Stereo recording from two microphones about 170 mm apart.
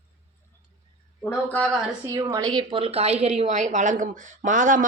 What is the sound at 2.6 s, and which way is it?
A woman's voice, 30° right (ahead or behind).